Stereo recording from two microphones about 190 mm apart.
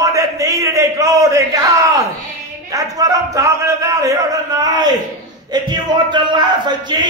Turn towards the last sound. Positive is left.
turn(degrees=-25)  # may be behind; listen again after turning